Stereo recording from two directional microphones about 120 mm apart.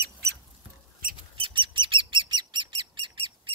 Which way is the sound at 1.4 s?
45° right (ahead or behind).